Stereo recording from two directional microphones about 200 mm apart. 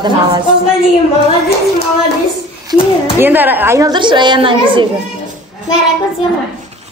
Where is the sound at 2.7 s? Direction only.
10° right (ahead or behind); by 4.8 s 25° right (ahead or behind).